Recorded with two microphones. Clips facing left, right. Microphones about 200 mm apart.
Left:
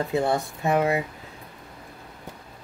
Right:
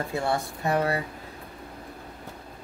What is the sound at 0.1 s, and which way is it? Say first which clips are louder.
Speech: left 4 dB; 20° left (ahead or behind).